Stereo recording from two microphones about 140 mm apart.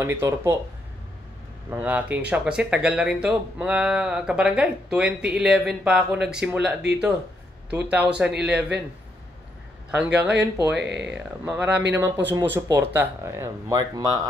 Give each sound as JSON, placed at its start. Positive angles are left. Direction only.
{"t": 0.0, "sound": "speech", "side_deg": -15}
{"t": 1.7, "sound": "speech", "side_deg": -10}
{"t": 9.8, "sound": "speech", "side_deg": -5}